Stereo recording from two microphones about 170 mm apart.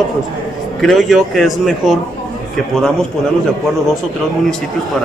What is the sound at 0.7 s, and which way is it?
A man's voice, centre (ahead or behind).